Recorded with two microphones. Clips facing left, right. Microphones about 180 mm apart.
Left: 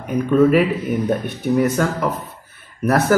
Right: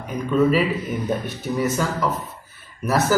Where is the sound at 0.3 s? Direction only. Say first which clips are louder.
Left 4 dB; 55° left (ahead or behind).